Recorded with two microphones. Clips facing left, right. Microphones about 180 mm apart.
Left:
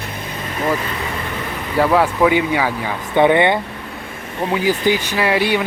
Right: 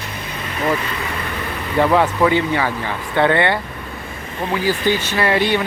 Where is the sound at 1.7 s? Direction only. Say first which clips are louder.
Even; 5° left (ahead or behind).